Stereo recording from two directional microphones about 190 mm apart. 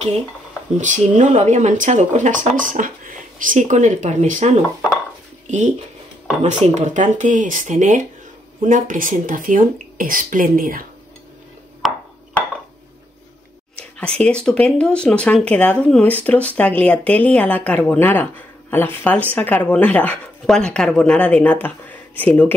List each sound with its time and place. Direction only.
0.7 s speech: 40° right (ahead or behind)
6.4 s speech: 35° right (ahead or behind)
11.8 s ping: centre (ahead or behind)
13.7 s speech: 5° left (ahead or behind)